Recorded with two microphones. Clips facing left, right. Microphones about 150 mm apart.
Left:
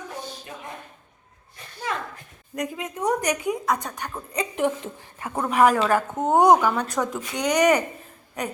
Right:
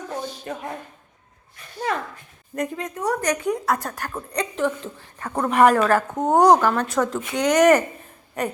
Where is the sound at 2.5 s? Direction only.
10° left (ahead or behind).